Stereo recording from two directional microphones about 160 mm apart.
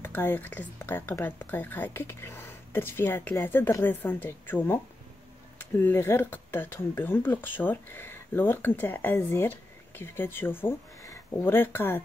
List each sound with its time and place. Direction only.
0.0 s speech: 15° left (ahead or behind)